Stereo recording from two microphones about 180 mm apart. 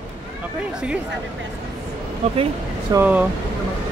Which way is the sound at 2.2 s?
35° right (ahead or behind).